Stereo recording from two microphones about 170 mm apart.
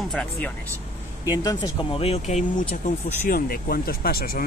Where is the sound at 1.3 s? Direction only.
20° left (ahead or behind).